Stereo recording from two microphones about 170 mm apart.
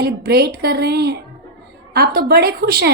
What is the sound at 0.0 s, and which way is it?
A woman's voice, 65° right (ahead or behind).